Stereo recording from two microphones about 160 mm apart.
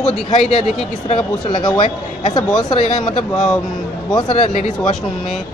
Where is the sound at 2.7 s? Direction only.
45° left (ahead or behind).